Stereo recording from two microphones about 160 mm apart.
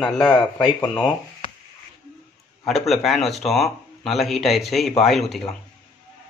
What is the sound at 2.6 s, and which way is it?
Speech, centre (ahead or behind).